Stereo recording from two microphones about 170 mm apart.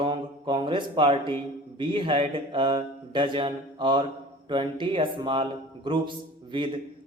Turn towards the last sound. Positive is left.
turn(degrees=-30)  # may be behind; listen again after turning